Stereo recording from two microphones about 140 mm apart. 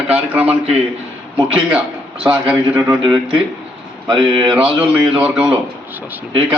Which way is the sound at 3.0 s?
35° right (ahead or behind).